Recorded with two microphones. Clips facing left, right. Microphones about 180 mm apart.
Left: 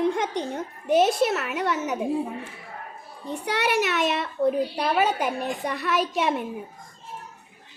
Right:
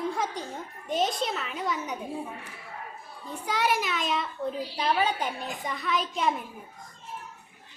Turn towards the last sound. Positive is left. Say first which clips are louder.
# left 4 dB
turn(degrees=70)  # may be behind; listen again after turning